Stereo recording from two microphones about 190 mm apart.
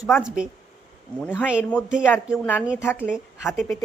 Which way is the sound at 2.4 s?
10° left (ahead or behind).